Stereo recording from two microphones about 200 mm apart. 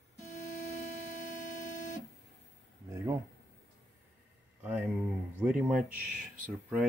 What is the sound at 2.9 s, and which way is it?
Speech, 15° right (ahead or behind).